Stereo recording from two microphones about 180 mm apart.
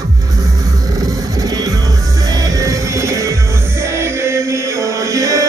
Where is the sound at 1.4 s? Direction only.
20° right (ahead or behind).